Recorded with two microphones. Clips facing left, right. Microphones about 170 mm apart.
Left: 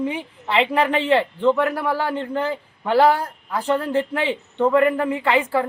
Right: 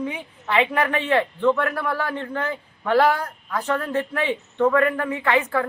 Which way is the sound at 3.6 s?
30° left (ahead or behind).